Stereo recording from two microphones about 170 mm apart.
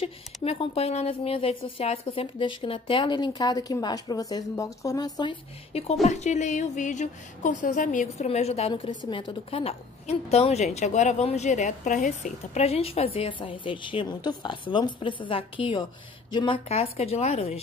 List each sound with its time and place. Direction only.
0.0 s a woman's voice: 35° left (ahead or behind)